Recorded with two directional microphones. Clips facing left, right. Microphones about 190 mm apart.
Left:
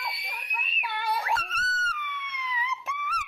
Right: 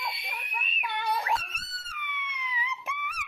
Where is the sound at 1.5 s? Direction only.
15° right (ahead or behind).